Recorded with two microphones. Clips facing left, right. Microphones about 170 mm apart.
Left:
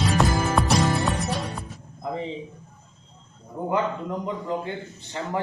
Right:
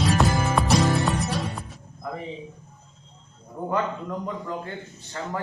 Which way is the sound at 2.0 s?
20° left (ahead or behind).